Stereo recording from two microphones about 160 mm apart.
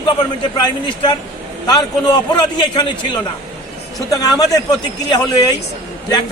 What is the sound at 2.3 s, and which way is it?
Speech, 25° left (ahead or behind).